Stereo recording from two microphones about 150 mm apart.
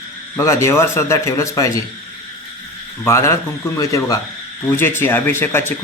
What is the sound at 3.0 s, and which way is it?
A man's voice, 20° left (ahead or behind).